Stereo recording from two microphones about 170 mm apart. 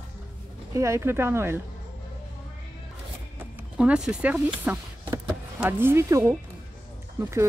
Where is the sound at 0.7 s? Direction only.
15° right (ahead or behind).